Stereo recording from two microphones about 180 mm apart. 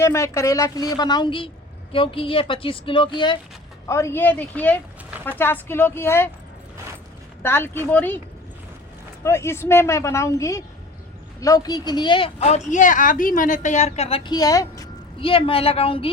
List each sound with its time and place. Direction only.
0.0 s a woman's voice: 15° left (ahead or behind)
3.8 s speech: 15° left (ahead or behind)
7.4 s speech: 10° left (ahead or behind)
9.2 s a woman's voice: 15° left (ahead or behind); by 14.2 s 35° left (ahead or behind)
14.3 s a woman's voice: 20° left (ahead or behind)
15.2 s a woman's voice: 30° left (ahead or behind)